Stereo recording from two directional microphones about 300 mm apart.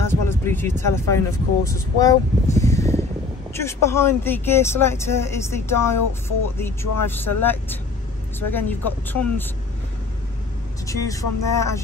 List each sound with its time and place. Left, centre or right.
0.0 s speech: centre
7.3 s speech: left
8.4 s speech: centre
10.9 s speech: centre